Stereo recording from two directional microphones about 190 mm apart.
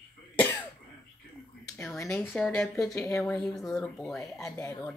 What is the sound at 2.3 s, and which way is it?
Speech, 5° left (ahead or behind).